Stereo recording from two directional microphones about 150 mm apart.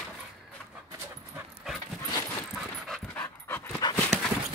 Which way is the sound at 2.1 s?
20° left (ahead or behind).